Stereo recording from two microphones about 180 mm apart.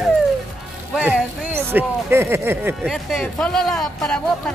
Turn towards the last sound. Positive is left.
turn(degrees=5)  # may be behind; listen again after turning